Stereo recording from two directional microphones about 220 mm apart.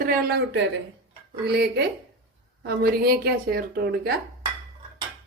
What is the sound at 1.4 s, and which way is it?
A woman's voice, 50° right (ahead or behind).